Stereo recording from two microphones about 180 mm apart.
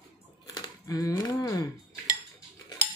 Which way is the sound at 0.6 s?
20° left (ahead or behind).